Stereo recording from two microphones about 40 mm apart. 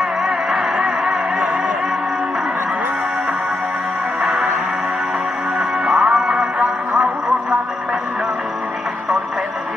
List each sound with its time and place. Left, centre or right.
0.2 s a sound: centre
4.2 s music: right
5.6 s music: centre
6.0 s music: right